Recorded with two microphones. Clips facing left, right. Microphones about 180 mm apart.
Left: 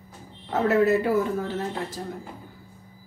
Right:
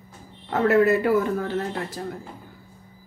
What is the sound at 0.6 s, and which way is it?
Speech, 60° right (ahead or behind).